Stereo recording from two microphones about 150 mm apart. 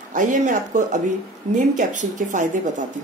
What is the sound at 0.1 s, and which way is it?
Speech, 55° right (ahead or behind).